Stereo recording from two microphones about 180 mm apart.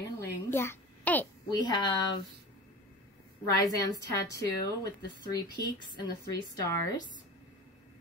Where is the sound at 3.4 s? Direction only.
20° left (ahead or behind).